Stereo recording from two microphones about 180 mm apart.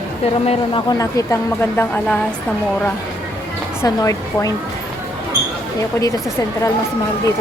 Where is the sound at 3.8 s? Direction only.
20° left (ahead or behind).